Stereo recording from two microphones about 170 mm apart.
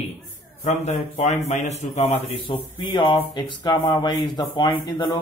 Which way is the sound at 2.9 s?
25° left (ahead or behind).